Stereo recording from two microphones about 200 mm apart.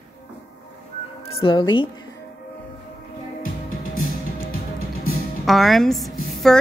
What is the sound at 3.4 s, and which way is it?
Music, 45° left (ahead or behind).